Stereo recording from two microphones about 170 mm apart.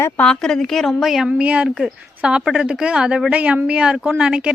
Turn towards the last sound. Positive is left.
turn(degrees=-5)  # may be behind; listen again after turning